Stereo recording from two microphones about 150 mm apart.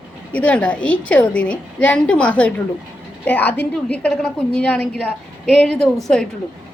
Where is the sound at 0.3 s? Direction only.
10° left (ahead or behind).